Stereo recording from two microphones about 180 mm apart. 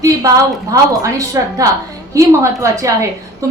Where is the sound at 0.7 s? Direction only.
20° right (ahead or behind).